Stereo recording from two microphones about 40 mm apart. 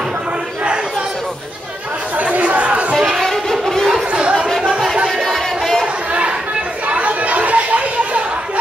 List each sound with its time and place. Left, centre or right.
2.1 s chatter: right
3.3 s violin: centre
4.1 s chatter: right
5.2 s a sound: centre
6.9 s chatter: right